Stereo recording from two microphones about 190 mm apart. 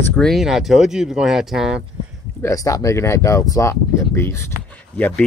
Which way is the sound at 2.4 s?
15° left (ahead or behind).